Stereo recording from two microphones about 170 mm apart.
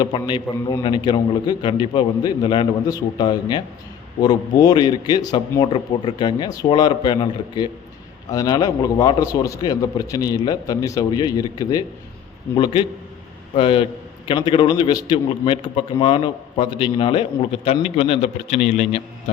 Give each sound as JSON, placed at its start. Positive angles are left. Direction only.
{"t": 0.0, "sound": "a man's voice", "side_deg": 25}